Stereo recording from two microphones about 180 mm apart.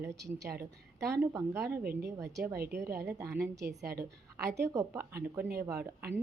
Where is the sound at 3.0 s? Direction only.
15° right (ahead or behind).